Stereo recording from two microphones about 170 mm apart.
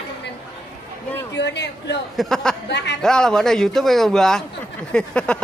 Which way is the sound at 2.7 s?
90° left.